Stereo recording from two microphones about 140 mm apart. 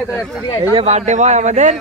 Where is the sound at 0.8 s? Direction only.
55° right (ahead or behind).